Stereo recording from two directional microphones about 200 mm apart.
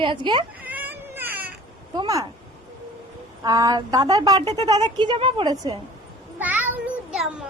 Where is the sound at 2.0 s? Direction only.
15° right (ahead or behind).